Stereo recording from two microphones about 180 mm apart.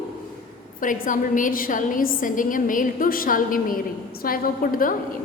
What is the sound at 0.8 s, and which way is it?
A woman's voice, 45° left (ahead or behind).